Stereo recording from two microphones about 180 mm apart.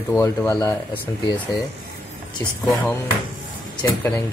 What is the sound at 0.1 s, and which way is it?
Speech, 15° left (ahead or behind).